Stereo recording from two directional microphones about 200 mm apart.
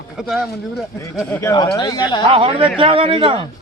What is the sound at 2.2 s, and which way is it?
A man's voice, 25° right (ahead or behind).